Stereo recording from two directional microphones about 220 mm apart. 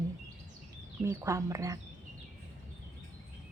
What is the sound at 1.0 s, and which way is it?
Speech, 10° right (ahead or behind).